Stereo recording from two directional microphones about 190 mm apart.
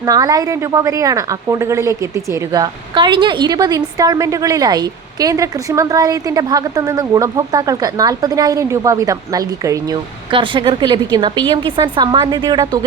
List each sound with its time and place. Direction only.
0.0 s a woman's voice: 20° right (ahead or behind)